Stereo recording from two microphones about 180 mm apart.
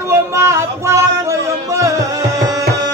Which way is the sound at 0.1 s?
15° right (ahead or behind).